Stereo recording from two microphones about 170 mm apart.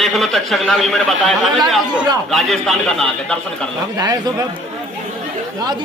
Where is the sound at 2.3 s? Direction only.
Centre (ahead or behind).